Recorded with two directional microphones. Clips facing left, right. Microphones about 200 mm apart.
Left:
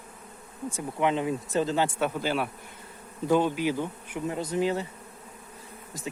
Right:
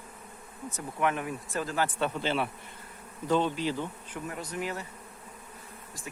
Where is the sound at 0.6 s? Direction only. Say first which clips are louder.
Left 3 dB; 25° left (ahead or behind).